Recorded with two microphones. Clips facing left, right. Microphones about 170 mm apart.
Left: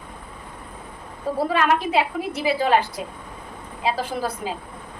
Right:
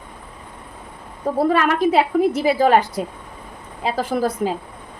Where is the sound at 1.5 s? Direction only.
45° right (ahead or behind).